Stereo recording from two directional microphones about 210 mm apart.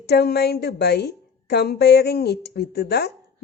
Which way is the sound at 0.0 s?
50° left (ahead or behind).